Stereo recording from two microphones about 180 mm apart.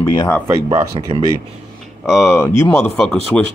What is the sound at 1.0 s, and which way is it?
Speech, 30° right (ahead or behind).